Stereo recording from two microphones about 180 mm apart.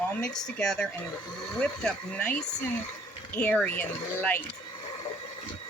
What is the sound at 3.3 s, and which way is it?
Speech, 10° left (ahead or behind).